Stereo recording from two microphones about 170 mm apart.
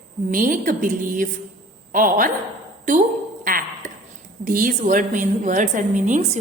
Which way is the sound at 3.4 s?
55° right (ahead or behind).